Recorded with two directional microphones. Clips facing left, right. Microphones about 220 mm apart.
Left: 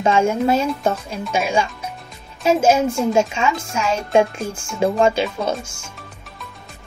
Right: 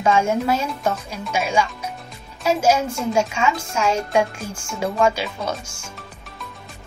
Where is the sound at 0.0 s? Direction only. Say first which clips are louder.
Left 2 dB; 25° left (ahead or behind).